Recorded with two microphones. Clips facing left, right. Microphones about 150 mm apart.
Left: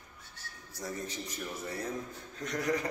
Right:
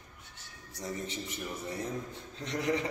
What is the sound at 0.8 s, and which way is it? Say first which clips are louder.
Speech: right 1 dB; 20° right (ahead or behind).